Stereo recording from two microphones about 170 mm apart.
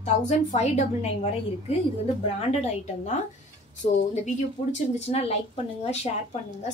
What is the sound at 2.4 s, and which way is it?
Speech, 40° left (ahead or behind).